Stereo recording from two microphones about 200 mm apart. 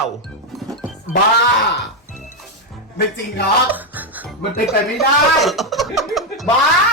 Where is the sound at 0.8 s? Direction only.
40° left (ahead or behind).